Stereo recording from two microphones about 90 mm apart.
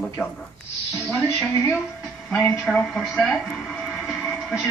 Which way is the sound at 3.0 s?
Centre (ahead or behind).